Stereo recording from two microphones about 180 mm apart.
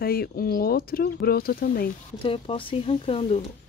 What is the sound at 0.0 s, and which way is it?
Speech, 55° left (ahead or behind).